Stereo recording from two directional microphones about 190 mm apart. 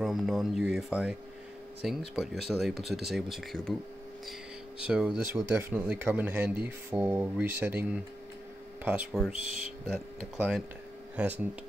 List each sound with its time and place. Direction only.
0.0 s speech: centre (ahead or behind)
4.8 s speech: 5° right (ahead or behind)
9.3 s speech: 30° left (ahead or behind)
9.8 s speech: 5° right (ahead or behind)